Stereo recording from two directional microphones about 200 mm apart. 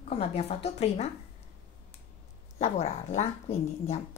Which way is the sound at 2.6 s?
35° left (ahead or behind).